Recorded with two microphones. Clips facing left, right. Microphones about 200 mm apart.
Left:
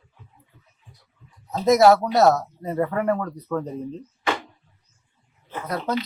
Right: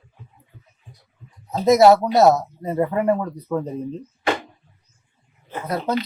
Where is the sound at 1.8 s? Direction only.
20° right (ahead or behind).